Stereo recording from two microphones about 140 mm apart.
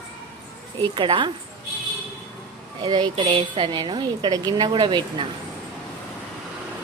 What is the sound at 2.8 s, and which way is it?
A woman's voice, 35° right (ahead or behind).